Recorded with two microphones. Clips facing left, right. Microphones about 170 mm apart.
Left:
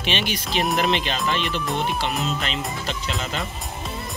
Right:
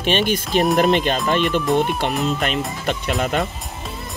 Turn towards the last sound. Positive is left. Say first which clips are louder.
# right 7 dB
turn(degrees=-55)  # may be behind; listen again after turning